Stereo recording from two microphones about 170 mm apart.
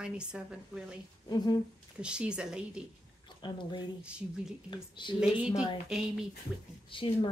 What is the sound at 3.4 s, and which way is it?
Speech, 25° left (ahead or behind).